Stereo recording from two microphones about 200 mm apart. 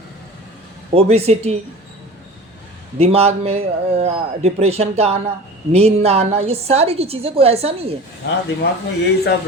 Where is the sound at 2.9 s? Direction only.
30° right (ahead or behind).